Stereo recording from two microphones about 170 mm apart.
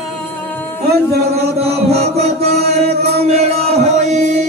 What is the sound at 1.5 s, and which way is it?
Mantra, 40° right (ahead or behind).